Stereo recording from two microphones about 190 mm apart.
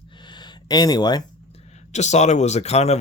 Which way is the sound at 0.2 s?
25° left (ahead or behind).